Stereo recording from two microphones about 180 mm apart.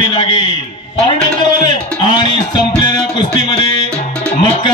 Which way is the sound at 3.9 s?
5° left (ahead or behind).